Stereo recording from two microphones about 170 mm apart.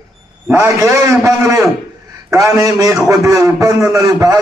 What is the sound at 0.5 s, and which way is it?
A man's voice, 20° right (ahead or behind).